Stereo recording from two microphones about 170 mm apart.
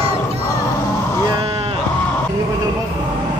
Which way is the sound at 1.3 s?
35° right (ahead or behind).